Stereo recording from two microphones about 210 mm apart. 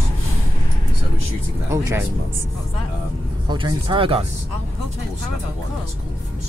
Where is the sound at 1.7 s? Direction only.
15° right (ahead or behind).